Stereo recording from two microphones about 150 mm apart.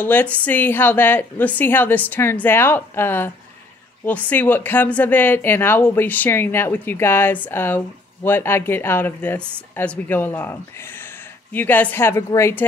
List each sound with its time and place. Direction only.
0.0 s speech: 10° left (ahead or behind)